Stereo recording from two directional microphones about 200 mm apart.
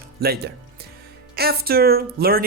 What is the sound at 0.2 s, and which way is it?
Speech, 50° right (ahead or behind).